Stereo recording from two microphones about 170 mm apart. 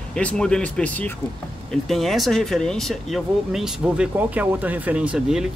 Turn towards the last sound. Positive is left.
turn(degrees=-5)  # may be behind; listen again after turning